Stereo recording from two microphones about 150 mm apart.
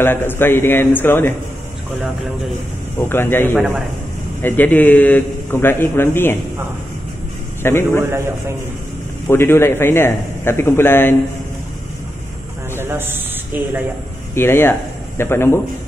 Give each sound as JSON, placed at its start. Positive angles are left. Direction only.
{"t": 0.0, "sound": "a man's voice", "side_deg": 15}
{"t": 3.0, "sound": "a man's voice", "side_deg": 15}
{"t": 3.5, "sound": "a man's voice", "side_deg": -5}
{"t": 4.4, "sound": "a man's voice", "side_deg": 15}
{"t": 7.6, "sound": "a man's voice", "side_deg": 15}
{"t": 9.3, "sound": "a man's voice", "side_deg": 15}
{"t": 12.7, "sound": "a sound", "side_deg": -15}
{"t": 14.3, "sound": "speech", "side_deg": 15}